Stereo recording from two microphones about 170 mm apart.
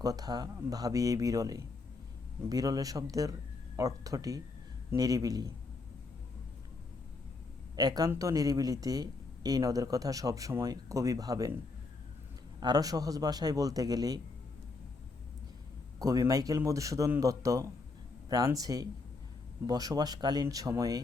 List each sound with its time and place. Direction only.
0.0 s speech: 20° right (ahead or behind)
7.8 s speech: 20° right (ahead or behind)
16.0 s speech: 20° right (ahead or behind)